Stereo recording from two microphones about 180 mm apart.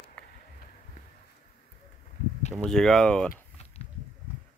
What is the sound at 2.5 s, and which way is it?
Speech, 5° left (ahead or behind).